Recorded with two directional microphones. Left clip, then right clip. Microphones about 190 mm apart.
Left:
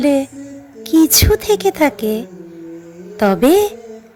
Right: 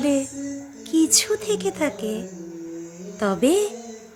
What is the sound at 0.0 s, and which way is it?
Speech, 20° left (ahead or behind).